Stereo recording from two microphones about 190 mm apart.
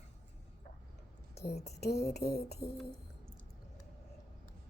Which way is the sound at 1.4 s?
50° left (ahead or behind).